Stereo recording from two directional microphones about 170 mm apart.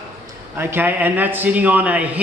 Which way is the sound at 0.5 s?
10° right (ahead or behind).